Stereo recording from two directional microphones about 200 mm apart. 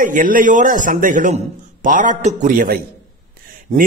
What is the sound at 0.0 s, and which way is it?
A man's voice, 40° right (ahead or behind).